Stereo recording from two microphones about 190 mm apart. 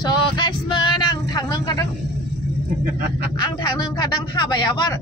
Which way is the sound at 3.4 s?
20° left (ahead or behind).